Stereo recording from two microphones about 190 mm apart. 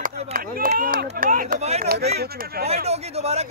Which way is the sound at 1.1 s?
45° right (ahead or behind).